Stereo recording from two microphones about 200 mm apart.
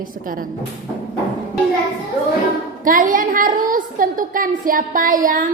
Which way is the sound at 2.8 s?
40° right (ahead or behind).